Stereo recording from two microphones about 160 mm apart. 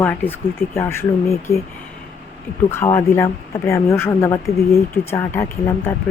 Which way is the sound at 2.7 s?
15° left (ahead or behind).